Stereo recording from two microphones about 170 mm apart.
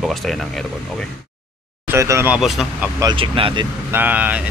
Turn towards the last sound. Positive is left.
turn(degrees=-10)  # may be behind; listen again after turning